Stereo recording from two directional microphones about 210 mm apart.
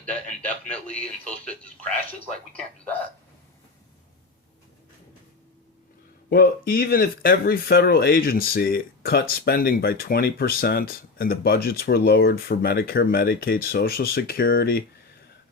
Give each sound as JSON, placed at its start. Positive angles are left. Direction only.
{"t": 0.0, "sound": "a man's voice", "side_deg": 5}
{"t": 6.3, "sound": "speech", "side_deg": 45}